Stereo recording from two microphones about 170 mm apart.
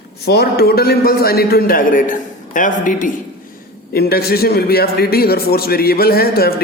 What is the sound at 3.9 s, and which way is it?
A man's voice, 65° left (ahead or behind).